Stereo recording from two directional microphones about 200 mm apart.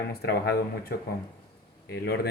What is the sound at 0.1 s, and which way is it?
Speech, 50° left (ahead or behind).